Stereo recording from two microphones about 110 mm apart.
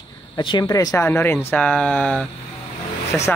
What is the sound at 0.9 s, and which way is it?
Speech, 20° left (ahead or behind).